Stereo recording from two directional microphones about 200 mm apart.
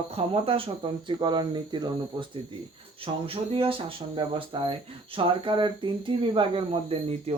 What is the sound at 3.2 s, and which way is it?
Speech, 30° right (ahead or behind).